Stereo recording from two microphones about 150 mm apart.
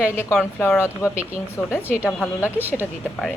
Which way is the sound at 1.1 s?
10° right (ahead or behind).